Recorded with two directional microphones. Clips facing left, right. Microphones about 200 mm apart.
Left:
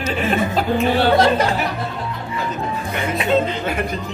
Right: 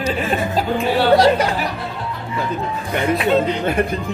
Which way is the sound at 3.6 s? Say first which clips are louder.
Right 4 dB; 55° right (ahead or behind).